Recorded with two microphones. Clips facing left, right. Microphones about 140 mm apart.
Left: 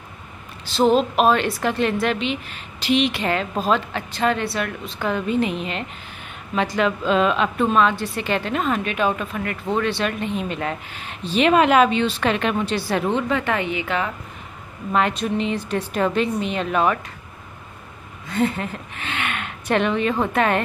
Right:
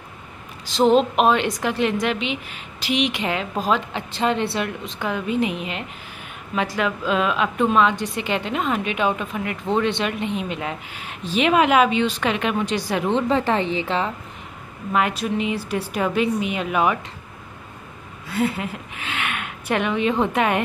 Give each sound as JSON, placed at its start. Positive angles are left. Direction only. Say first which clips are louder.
{"t": 0.7, "sound": "a woman's voice", "louder": "right 1 dB", "side_deg": -20}
{"t": 13.1, "sound": "speech", "louder": "right 2 dB", "side_deg": -30}
{"t": 15.0, "sound": "a woman's voice", "louder": "left 1 dB", "side_deg": -5}
{"t": 18.3, "sound": "speech", "louder": "left 1 dB", "side_deg": -5}